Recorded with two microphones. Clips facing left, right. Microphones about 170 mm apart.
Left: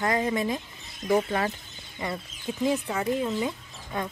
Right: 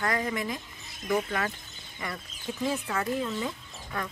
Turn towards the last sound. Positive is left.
turn(degrees=20)  # may be behind; listen again after turning